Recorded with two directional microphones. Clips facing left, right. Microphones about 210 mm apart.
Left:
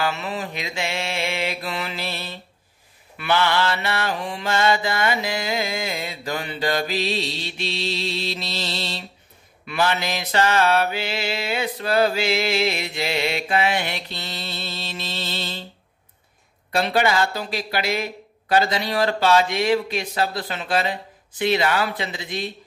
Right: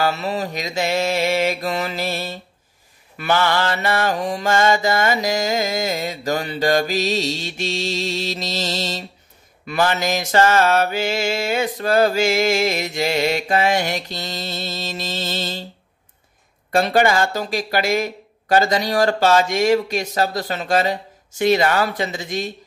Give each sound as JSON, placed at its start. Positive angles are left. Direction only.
{"t": 0.0, "sound": "mantra", "side_deg": -35}
{"t": 16.7, "sound": "mantra", "side_deg": -45}